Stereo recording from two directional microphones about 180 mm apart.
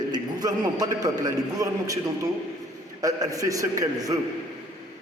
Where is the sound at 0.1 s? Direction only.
20° right (ahead or behind).